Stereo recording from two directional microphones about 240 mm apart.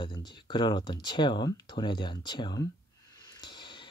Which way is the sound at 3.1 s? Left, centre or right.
Centre.